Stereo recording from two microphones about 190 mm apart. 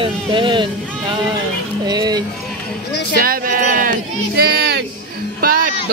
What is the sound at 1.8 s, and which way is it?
Speech, 20° right (ahead or behind).